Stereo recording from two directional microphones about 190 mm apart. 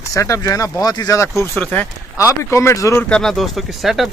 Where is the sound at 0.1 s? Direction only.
15° left (ahead or behind).